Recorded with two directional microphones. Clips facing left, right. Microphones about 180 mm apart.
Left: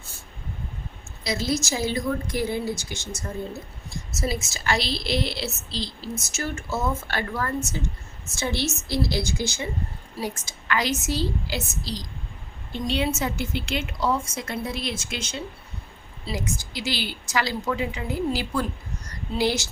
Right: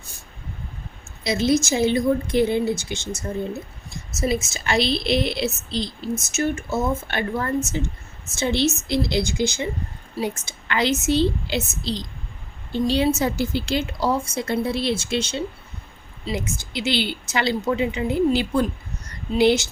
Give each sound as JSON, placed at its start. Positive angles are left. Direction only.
{"t": 1.2, "sound": "a woman's voice", "side_deg": -25}
{"t": 4.2, "sound": "a woman's voice", "side_deg": -20}
{"t": 12.7, "sound": "a woman's voice", "side_deg": -35}